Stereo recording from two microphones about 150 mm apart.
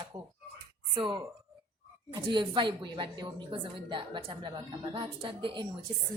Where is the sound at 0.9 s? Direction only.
30° right (ahead or behind).